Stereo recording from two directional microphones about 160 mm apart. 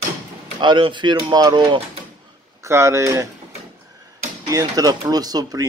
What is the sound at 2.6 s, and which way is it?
Speech, 15° right (ahead or behind).